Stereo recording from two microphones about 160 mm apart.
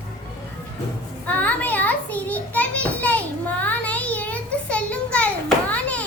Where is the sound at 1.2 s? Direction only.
10° left (ahead or behind).